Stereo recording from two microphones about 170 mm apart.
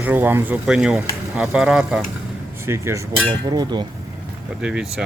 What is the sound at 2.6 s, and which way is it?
Speech, 15° right (ahead or behind).